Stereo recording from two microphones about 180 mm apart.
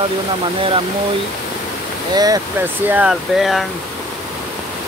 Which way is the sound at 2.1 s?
20° right (ahead or behind).